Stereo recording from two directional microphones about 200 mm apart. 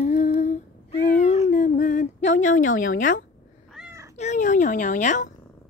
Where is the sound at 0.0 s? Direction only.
35° left (ahead or behind).